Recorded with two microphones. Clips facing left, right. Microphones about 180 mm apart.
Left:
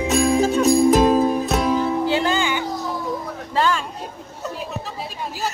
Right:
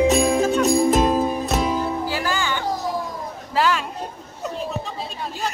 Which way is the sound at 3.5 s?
Centre (ahead or behind).